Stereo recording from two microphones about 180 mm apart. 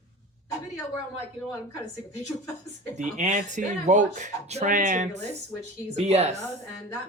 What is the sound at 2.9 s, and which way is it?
Speech, 40° right (ahead or behind).